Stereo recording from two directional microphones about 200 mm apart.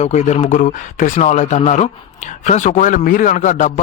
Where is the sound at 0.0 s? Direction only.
35° left (ahead or behind).